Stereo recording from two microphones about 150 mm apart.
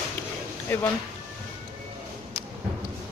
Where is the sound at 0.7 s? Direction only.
10° left (ahead or behind).